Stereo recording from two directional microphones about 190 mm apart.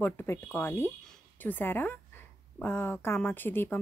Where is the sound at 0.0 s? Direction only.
10° left (ahead or behind).